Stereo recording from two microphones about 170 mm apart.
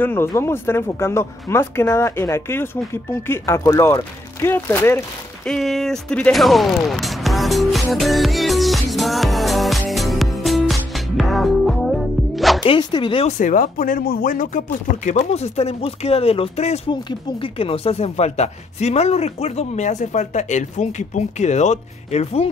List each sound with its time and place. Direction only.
0.0 s speech: 15° left (ahead or behind)
5.5 s music: centre (ahead or behind)
12.6 s speech: 30° left (ahead or behind)
13.4 s speech: 50° left (ahead or behind)
15.0 s speech: 40° left (ahead or behind)